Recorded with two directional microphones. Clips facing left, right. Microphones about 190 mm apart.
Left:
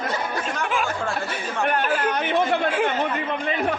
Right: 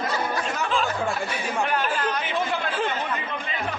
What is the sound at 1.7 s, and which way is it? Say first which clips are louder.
Speech: left 3 dB; 55° left (ahead or behind).